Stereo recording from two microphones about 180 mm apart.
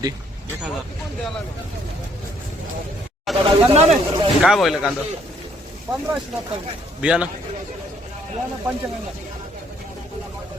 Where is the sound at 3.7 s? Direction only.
35° right (ahead or behind).